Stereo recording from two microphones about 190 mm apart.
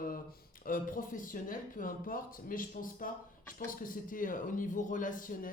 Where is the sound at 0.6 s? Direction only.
45° left (ahead or behind).